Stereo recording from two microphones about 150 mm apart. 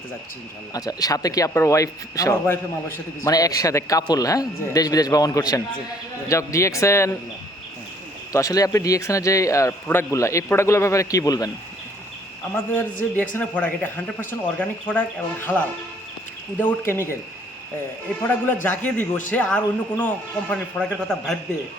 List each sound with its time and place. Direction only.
0.7 s speech: 25° left (ahead or behind)
8.3 s speech: 20° left (ahead or behind)
13.3 s speech: 10° left (ahead or behind)
18.2 s speech: 10° left (ahead or behind)